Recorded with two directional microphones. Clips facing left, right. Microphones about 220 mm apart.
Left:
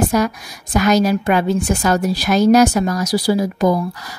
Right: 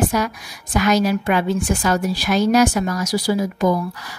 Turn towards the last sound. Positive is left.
turn(degrees=35)  # may be behind; listen again after turning